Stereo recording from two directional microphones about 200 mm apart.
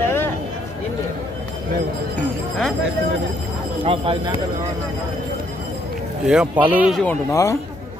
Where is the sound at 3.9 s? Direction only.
25° right (ahead or behind).